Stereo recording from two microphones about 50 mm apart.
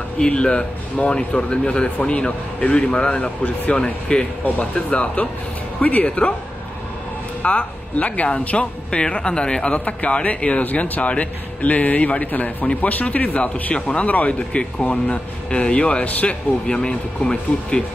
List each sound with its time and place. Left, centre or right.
0.2 s speech: left
7.4 s speech: left